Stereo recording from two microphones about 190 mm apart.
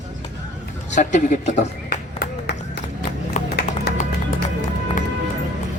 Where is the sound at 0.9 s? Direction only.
40° left (ahead or behind).